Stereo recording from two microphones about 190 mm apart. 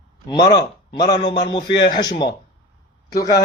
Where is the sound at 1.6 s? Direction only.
65° left (ahead or behind).